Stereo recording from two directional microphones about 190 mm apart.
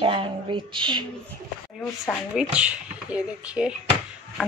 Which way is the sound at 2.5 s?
5° right (ahead or behind).